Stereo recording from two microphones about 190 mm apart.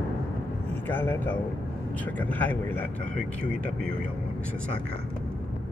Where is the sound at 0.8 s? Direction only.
10° left (ahead or behind).